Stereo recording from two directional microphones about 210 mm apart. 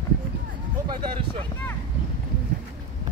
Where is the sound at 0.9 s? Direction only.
25° right (ahead or behind).